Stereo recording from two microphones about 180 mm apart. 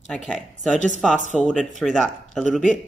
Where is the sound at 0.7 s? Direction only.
45° left (ahead or behind).